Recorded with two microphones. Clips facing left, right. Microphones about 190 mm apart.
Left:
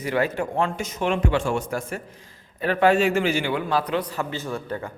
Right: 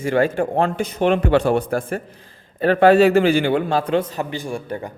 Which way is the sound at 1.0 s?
60° right (ahead or behind).